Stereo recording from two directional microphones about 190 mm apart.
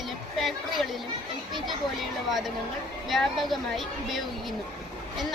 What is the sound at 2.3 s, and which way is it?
A woman's voice, centre (ahead or behind).